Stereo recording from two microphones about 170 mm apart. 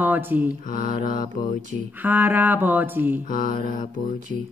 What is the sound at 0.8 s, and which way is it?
Mantra, 55° left (ahead or behind).